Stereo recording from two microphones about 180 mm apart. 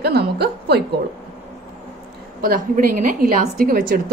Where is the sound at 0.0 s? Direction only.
60° right (ahead or behind).